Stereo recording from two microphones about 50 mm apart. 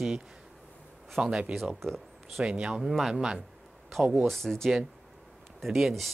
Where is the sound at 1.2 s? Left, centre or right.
Centre.